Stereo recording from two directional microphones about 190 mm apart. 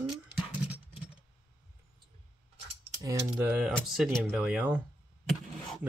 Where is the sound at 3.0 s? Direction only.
10° right (ahead or behind).